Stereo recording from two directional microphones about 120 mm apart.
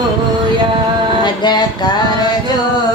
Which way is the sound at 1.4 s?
40° left (ahead or behind).